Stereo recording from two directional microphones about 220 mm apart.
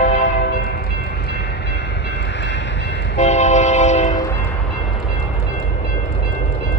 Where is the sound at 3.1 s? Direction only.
30° left (ahead or behind).